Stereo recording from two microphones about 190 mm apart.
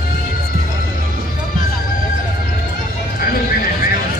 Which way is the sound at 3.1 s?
50° left (ahead or behind).